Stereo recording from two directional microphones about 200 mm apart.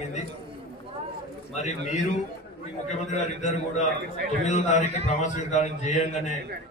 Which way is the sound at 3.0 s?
35° left (ahead or behind).